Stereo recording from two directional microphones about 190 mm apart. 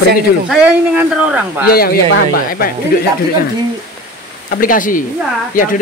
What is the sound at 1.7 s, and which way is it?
Speech, 55° left (ahead or behind).